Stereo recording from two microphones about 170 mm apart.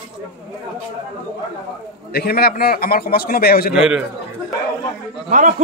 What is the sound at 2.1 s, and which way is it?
A man's voice, 65° left (ahead or behind).